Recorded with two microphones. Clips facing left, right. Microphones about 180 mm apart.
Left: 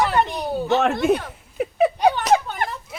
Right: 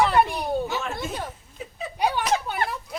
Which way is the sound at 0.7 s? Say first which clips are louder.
Left 12 dB; 65° left (ahead or behind).